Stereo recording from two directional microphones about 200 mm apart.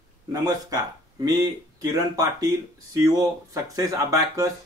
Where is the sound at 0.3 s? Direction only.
20° right (ahead or behind).